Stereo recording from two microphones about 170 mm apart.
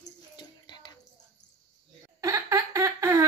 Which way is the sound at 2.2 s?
20° right (ahead or behind).